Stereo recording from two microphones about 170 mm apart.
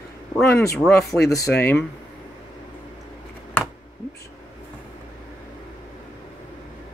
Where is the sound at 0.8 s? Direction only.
5° left (ahead or behind).